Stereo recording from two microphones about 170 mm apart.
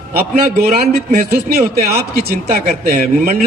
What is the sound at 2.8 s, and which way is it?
Speech, 55° right (ahead or behind).